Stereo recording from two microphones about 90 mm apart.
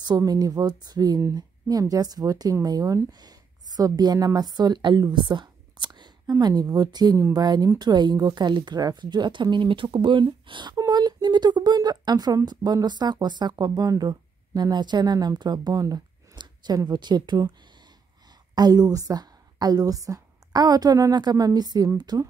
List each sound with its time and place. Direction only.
0.0 s a woman's voice: 50° right (ahead or behind)
18.5 s a woman's voice: 50° right (ahead or behind)